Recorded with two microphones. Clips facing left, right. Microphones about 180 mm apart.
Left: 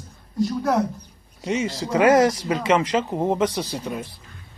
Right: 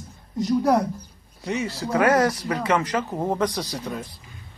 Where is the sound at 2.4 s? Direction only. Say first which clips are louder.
Left 3 dB; 25° left (ahead or behind).